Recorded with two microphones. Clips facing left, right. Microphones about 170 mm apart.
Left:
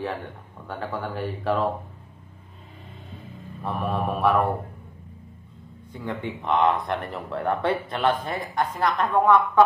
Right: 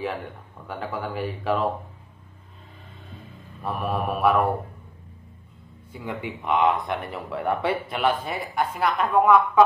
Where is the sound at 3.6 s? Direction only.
5° right (ahead or behind).